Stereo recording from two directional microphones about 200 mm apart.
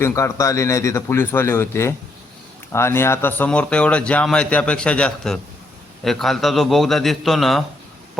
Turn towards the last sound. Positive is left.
turn(degrees=0)  # may be behind; listen again after turning